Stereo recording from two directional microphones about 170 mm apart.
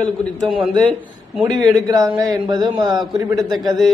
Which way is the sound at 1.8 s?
25° right (ahead or behind).